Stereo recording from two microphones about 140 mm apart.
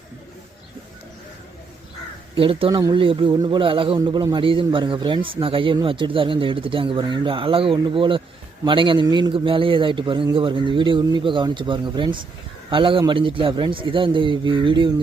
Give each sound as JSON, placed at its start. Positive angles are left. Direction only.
{"t": 2.3, "sound": "a man's voice", "side_deg": -40}